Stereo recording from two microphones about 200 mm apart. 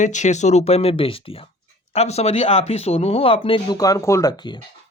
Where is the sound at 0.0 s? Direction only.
35° left (ahead or behind).